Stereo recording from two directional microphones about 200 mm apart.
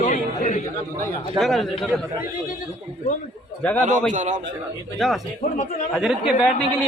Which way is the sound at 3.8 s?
40° right (ahead or behind).